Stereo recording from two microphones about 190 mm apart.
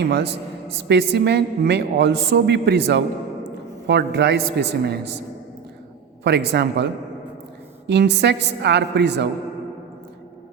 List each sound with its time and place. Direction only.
0.0 s a man's voice: 55° right (ahead or behind)
6.2 s a man's voice: 60° right (ahead or behind)